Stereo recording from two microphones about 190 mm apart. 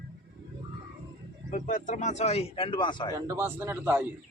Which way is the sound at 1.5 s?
45° left (ahead or behind).